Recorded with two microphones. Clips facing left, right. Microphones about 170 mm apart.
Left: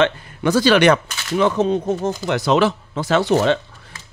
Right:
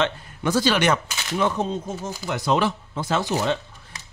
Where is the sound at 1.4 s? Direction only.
80° left.